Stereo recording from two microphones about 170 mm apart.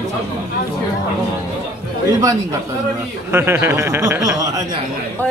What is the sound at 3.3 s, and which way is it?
Speech, 15° right (ahead or behind).